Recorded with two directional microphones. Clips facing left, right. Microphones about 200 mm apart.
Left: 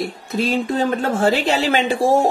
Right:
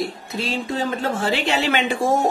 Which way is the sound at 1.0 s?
45° left (ahead or behind).